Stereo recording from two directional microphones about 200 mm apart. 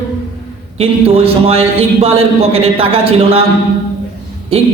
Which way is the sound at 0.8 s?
30° right (ahead or behind).